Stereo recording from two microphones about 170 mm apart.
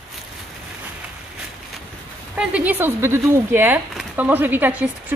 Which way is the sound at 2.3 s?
10° right (ahead or behind).